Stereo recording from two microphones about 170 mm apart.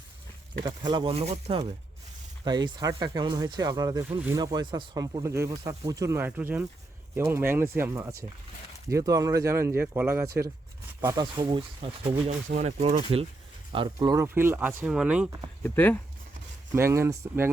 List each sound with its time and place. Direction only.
0.6 s speech: 25° right (ahead or behind)
2.4 s speech: 25° right (ahead or behind)
13.7 s speech: 25° right (ahead or behind); by 15.3 s 5° right (ahead or behind)
15.6 s speech: 10° left (ahead or behind)
16.7 s speech: 15° right (ahead or behind)